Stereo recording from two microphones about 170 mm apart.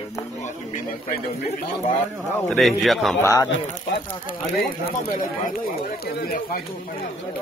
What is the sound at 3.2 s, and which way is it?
Speech, 15° left (ahead or behind).